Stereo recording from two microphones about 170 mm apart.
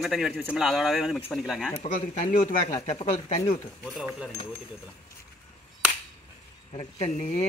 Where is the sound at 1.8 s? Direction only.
45° left (ahead or behind).